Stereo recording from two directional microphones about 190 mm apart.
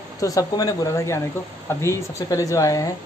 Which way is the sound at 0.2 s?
20° left (ahead or behind).